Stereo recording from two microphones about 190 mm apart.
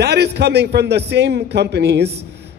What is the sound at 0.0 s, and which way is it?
A man's voice, 55° right (ahead or behind).